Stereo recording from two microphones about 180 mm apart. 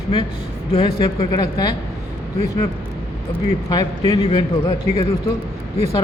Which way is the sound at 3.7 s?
20° left (ahead or behind).